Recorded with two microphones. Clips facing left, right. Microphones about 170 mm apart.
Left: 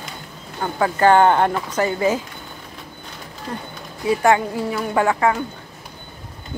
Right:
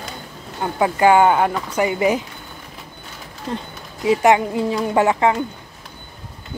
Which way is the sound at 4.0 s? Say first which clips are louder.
Right 2 dB; 20° right (ahead or behind).